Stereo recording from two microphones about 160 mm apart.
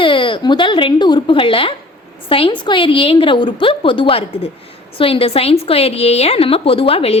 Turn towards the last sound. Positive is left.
turn(degrees=40)  # may be behind; listen again after turning